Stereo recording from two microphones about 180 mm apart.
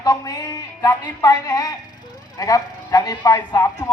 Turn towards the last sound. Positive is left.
turn(degrees=20)  # may be behind; listen again after turning